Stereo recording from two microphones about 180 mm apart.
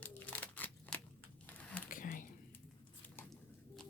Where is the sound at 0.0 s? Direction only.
10° left (ahead or behind).